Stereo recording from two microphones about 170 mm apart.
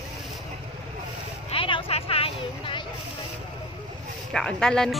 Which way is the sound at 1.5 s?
30° left (ahead or behind).